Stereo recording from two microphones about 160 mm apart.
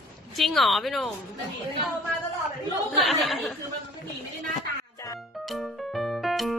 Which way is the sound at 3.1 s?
Centre (ahead or behind).